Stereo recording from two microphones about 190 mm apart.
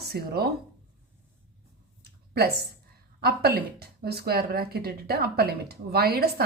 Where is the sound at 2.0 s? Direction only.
55° right (ahead or behind).